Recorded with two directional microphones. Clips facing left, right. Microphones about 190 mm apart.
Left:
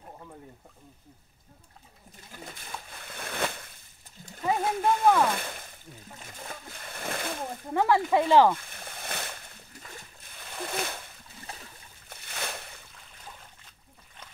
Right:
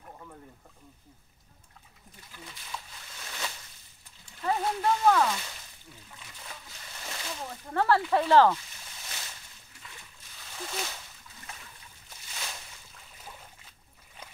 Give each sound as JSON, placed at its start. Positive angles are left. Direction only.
{"t": 2.3, "sound": "a sound", "side_deg": 50}
{"t": 5.2, "sound": "splash", "side_deg": 55}
{"t": 7.7, "sound": "speech", "side_deg": 15}
{"t": 8.5, "sound": "splash", "side_deg": 55}
{"t": 11.5, "sound": "splash", "side_deg": 35}
{"t": 12.1, "sound": "a sound", "side_deg": 60}